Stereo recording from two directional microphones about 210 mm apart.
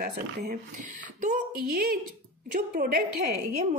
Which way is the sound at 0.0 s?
40° right (ahead or behind).